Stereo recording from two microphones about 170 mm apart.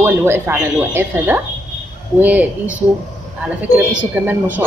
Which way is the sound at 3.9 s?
10° right (ahead or behind).